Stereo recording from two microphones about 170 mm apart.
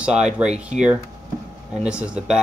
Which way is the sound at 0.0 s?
5° right (ahead or behind).